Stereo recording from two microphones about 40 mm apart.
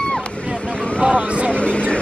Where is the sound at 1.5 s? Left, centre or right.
Left.